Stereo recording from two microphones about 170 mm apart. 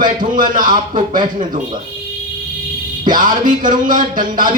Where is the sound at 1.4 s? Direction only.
50° right (ahead or behind).